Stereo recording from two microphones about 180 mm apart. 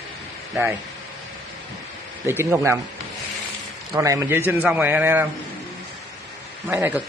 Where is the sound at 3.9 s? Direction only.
20° right (ahead or behind).